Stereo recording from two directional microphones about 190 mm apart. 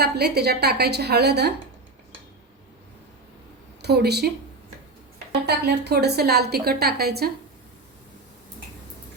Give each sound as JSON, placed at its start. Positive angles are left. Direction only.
{"t": 0.0, "sound": "a woman's voice", "side_deg": -60}
{"t": 3.8, "sound": "speech", "side_deg": -60}
{"t": 5.5, "sound": "a woman's voice", "side_deg": -60}